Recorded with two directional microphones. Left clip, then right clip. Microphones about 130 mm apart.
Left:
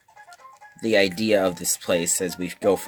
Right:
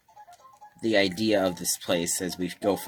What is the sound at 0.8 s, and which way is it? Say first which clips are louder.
Speech: left 4 dB; 45° left (ahead or behind).